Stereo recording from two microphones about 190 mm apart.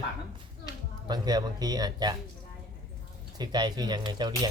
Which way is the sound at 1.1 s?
20° right (ahead or behind).